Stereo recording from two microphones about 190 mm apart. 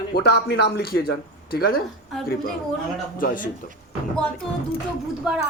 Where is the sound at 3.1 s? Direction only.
45° left (ahead or behind).